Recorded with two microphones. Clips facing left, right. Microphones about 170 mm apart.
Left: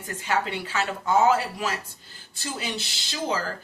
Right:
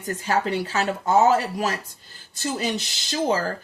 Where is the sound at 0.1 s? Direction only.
40° right (ahead or behind).